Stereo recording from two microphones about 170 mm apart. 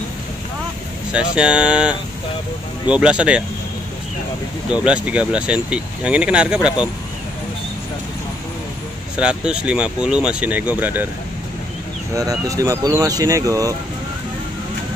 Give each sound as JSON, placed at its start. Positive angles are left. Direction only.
{"t": 1.3, "sound": "speech", "side_deg": -5}
{"t": 4.6, "sound": "speech", "side_deg": -5}
{"t": 9.1, "sound": "speech", "side_deg": -5}
{"t": 12.1, "sound": "speech", "side_deg": -20}